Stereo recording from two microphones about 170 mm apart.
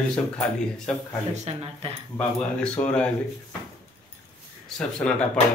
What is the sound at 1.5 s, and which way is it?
Speech, 40° right (ahead or behind).